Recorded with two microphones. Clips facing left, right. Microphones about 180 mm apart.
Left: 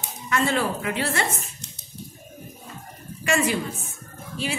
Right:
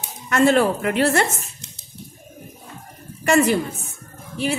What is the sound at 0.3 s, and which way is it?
Speech, 50° right (ahead or behind).